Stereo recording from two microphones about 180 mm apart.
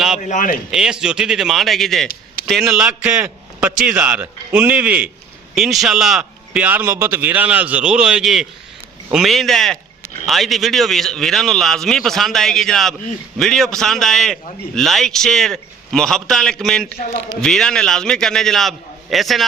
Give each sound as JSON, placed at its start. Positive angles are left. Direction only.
{"t": 0.2, "sound": "speech", "side_deg": 45}
{"t": 0.7, "sound": "a man's voice", "side_deg": -5}